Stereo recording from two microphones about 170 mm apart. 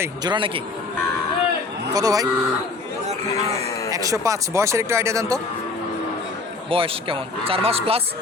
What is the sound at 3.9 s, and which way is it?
Speech, 20° right (ahead or behind).